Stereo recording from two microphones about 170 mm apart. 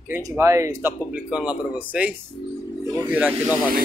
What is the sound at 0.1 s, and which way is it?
Speech, 15° right (ahead or behind).